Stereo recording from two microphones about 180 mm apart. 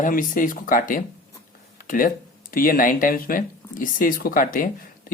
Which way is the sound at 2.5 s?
50° left (ahead or behind).